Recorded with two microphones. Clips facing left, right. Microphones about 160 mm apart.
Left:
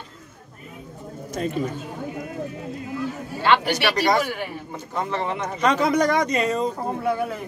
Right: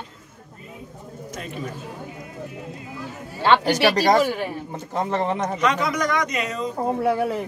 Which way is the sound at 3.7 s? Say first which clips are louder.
Right 3 dB; 45° right (ahead or behind).